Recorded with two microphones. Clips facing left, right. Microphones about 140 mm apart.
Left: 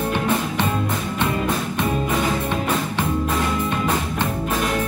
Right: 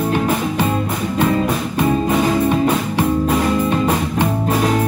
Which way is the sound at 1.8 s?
25° right (ahead or behind).